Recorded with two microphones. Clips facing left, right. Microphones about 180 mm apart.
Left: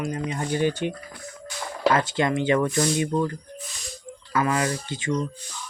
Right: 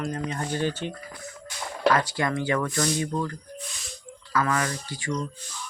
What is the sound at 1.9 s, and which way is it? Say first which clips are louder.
A man's voice: left 2 dB; 20° left (ahead or behind).